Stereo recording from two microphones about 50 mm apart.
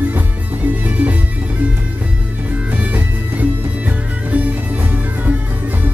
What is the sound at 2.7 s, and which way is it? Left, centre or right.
Music, right.